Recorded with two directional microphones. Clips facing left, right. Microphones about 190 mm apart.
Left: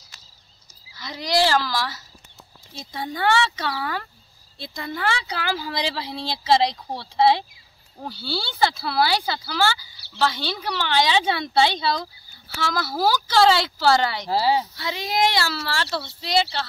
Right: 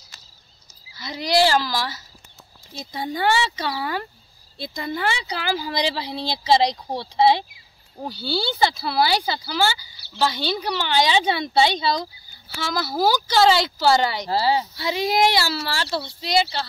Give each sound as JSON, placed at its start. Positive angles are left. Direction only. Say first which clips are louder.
{"t": 0.9, "sound": "a woman's voice", "louder": "right 2 dB", "side_deg": -5}
{"t": 2.9, "sound": "speech", "louder": "right 2 dB", "side_deg": -20}
{"t": 3.6, "sound": "speech", "louder": "right 1 dB", "side_deg": -10}
{"t": 5.0, "sound": "a woman's voice", "louder": "left 1 dB", "side_deg": -5}
{"t": 14.3, "sound": "speech", "louder": "left 1 dB", "side_deg": 15}
{"t": 14.9, "sound": "a woman's voice", "louder": "right 4 dB", "side_deg": -5}